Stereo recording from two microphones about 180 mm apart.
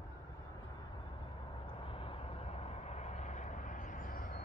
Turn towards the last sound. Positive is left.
turn(degrees=50)  # may be behind; listen again after turning